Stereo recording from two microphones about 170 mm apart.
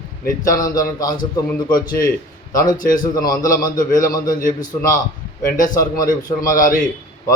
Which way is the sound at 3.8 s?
55° left (ahead or behind).